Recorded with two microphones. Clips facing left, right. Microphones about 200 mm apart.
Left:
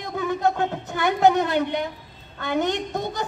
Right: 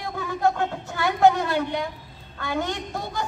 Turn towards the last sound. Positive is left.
turn(degrees=20)  # may be behind; listen again after turning